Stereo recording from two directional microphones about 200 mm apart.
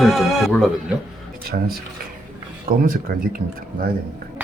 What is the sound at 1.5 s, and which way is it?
Speech, 40° right (ahead or behind).